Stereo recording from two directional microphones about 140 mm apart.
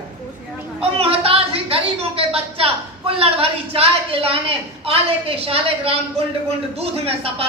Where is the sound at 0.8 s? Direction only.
45° right (ahead or behind).